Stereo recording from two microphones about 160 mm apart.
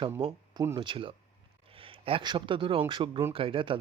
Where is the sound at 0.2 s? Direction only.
35° right (ahead or behind).